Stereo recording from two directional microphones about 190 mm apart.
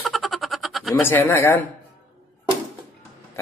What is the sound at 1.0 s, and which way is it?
Speech, 10° left (ahead or behind).